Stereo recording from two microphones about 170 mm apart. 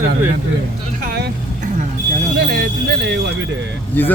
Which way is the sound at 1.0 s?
70° right (ahead or behind).